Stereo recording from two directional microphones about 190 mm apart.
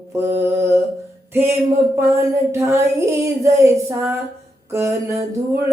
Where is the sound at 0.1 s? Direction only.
15° right (ahead or behind).